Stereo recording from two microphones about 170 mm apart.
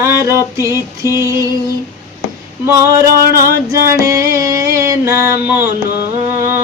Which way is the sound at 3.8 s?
15° right (ahead or behind).